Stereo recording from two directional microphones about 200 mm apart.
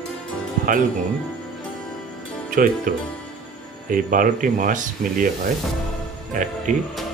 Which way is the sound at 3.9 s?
45° right (ahead or behind).